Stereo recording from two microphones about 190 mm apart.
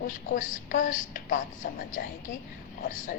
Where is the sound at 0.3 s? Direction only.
45° left (ahead or behind).